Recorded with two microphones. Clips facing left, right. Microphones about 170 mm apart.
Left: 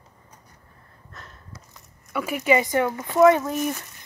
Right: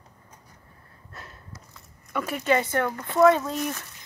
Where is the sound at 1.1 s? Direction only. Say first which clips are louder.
Right 1 dB; 10° right (ahead or behind).